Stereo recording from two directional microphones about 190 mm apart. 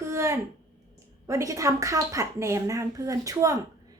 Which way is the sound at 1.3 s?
15° right (ahead or behind).